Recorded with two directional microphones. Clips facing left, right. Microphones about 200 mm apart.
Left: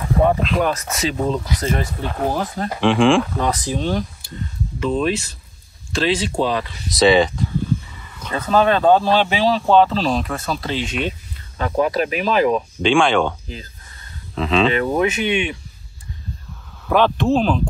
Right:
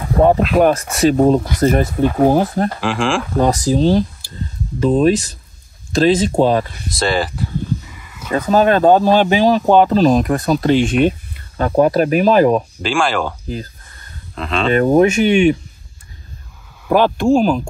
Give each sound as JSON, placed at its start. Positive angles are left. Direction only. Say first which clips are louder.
{"t": 0.6, "sound": "speech", "louder": "right 7 dB", "side_deg": -50}
{"t": 2.0, "sound": "speech", "louder": "right 10 dB", "side_deg": -5}
{"t": 2.3, "sound": "speech", "louder": "right 8 dB", "side_deg": -50}
{"t": 2.8, "sound": "speech", "louder": "left 4 dB", "side_deg": 0}
{"t": 3.3, "sound": "speech", "louder": "right 7 dB", "side_deg": -40}
{"t": 6.9, "sound": "speech", "louder": "left 6 dB", "side_deg": 0}
{"t": 10.6, "sound": "speech", "louder": "right 10 dB", "side_deg": -50}
{"t": 12.7, "sound": "speech", "louder": "left 2 dB", "side_deg": 0}
{"t": 14.7, "sound": "speech", "louder": "right 7 dB", "side_deg": -45}
{"t": 16.8, "sound": "speech", "louder": "right 3 dB", "side_deg": -10}